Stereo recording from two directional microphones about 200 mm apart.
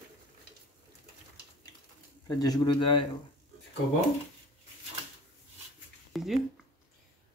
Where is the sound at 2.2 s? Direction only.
20° left (ahead or behind).